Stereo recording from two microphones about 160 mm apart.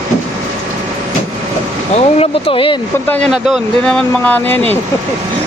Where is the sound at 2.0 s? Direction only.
40° left (ahead or behind).